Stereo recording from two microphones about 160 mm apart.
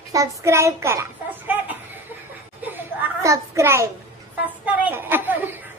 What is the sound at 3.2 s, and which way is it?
Speech, 20° right (ahead or behind).